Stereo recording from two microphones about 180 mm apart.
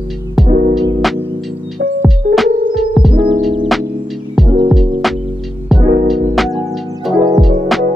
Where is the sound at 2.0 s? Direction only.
Centre (ahead or behind).